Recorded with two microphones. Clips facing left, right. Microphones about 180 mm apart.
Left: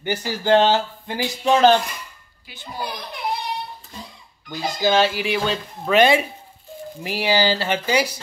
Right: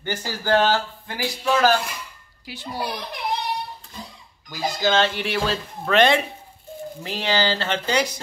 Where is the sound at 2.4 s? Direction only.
70° right (ahead or behind).